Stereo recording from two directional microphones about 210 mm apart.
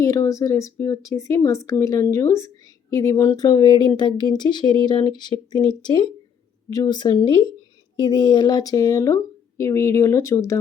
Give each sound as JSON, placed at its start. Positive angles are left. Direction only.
{"t": 0.0, "sound": "a woman's voice", "side_deg": 15}